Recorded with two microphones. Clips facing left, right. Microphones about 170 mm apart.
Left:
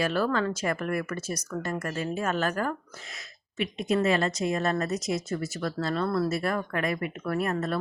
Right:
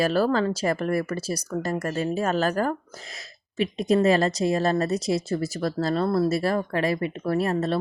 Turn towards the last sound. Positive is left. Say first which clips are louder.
# right 4 dB
turn(degrees=-30)  # may be behind; listen again after turning